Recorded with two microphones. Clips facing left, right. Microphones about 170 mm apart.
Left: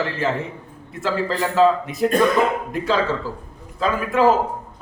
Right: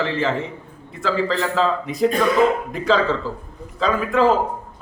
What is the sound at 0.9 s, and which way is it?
A man's voice, 5° left (ahead or behind).